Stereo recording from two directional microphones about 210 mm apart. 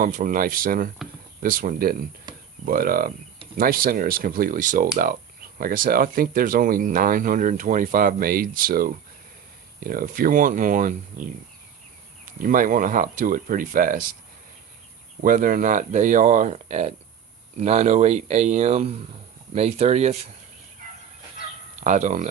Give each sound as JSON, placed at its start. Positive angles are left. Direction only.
{"t": 0.0, "sound": "speech", "side_deg": -40}
{"t": 2.3, "sound": "a sound", "side_deg": -20}
{"t": 2.6, "sound": "speech", "side_deg": -45}
{"t": 12.4, "sound": "speech", "side_deg": -40}
{"t": 15.2, "sound": "speech", "side_deg": -40}
{"t": 21.8, "sound": "speech", "side_deg": -35}